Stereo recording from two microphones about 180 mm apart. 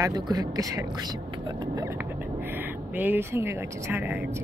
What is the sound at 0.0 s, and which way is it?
Speech, 20° right (ahead or behind).